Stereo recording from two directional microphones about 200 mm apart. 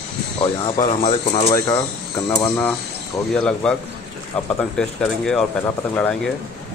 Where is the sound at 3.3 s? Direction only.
5° left (ahead or behind).